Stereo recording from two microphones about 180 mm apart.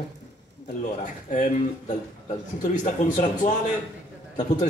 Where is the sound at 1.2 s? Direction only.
45° left (ahead or behind).